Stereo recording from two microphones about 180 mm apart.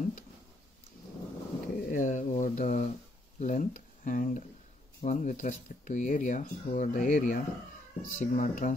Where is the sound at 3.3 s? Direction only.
45° left (ahead or behind).